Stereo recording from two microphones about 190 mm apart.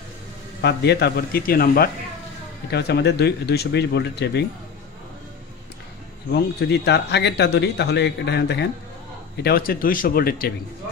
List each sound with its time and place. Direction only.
0.6 s speech: 60° left (ahead or behind)
6.3 s speech: 65° left (ahead or behind)